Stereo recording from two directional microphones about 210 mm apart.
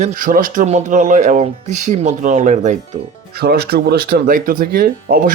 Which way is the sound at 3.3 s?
50° right (ahead or behind).